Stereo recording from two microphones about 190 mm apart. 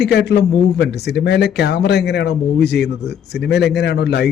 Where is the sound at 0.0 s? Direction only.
60° left (ahead or behind).